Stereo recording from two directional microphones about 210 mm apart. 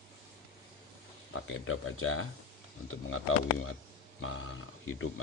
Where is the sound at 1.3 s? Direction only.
80° left.